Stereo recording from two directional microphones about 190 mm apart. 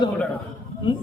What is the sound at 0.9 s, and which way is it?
Speech, 25° left (ahead or behind).